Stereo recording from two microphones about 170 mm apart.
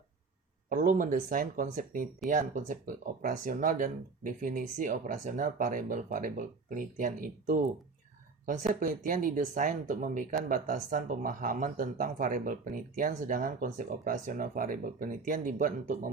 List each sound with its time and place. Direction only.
0.7 s speech: 55° right (ahead or behind)
8.7 s speech: 60° right (ahead or behind)